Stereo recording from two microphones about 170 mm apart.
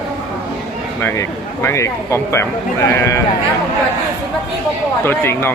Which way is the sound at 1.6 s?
15° left (ahead or behind).